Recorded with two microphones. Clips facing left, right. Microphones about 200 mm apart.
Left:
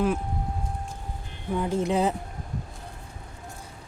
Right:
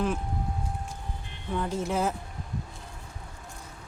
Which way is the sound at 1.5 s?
15° left (ahead or behind).